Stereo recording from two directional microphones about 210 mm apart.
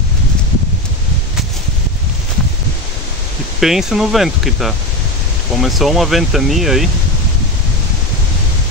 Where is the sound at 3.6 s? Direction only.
Centre (ahead or behind).